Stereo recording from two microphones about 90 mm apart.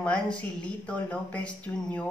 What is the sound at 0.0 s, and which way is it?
Speech, 15° left (ahead or behind).